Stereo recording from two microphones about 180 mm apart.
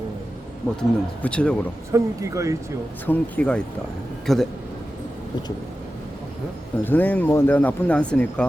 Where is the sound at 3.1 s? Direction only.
10° left (ahead or behind).